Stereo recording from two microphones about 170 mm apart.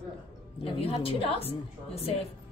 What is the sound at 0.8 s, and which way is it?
A woman's voice, 35° left (ahead or behind).